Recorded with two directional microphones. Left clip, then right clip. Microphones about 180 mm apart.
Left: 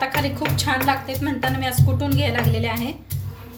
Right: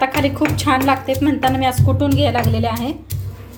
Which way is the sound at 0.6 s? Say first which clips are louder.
Right 4 dB; 45° right (ahead or behind).